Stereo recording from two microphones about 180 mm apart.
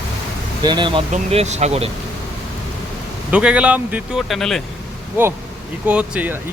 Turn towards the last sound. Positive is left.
turn(degrees=-10)  # may be behind; listen again after turning